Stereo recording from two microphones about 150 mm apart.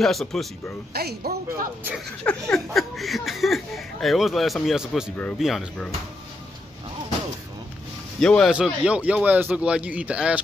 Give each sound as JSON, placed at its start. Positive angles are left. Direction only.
{"t": 0.0, "sound": "speech", "side_deg": 0}
{"t": 0.9, "sound": "speech", "side_deg": -90}
{"t": 2.2, "sound": "speech", "side_deg": 5}
{"t": 8.2, "sound": "speech", "side_deg": 5}
{"t": 8.5, "sound": "speech", "side_deg": -5}